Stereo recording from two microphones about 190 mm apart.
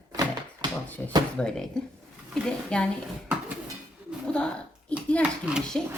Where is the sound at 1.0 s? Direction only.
10° left (ahead or behind).